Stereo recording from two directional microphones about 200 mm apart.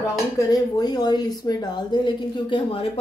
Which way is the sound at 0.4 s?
20° left (ahead or behind).